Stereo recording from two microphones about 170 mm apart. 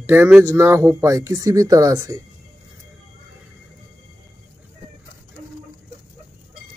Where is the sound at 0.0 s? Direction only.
15° right (ahead or behind).